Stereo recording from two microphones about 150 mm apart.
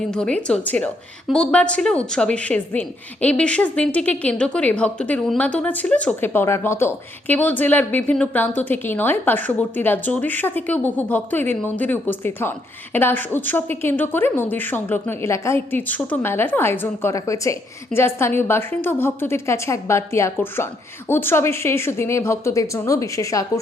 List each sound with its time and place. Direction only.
0.0 s a woman's voice: 5° left (ahead or behind); by 23.5 s 20° left (ahead or behind)